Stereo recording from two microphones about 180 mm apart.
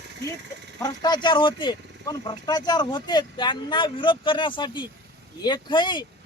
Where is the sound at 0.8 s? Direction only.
25° left (ahead or behind).